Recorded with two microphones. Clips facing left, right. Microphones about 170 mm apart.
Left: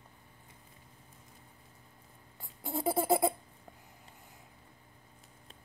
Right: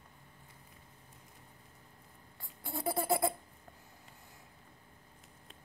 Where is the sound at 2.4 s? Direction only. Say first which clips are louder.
Left 4 dB; 20° left (ahead or behind).